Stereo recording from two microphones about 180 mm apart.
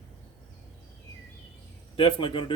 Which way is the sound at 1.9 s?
30° left (ahead or behind).